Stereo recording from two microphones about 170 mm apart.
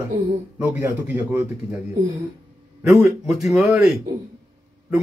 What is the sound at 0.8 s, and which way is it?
Speech, 15° right (ahead or behind).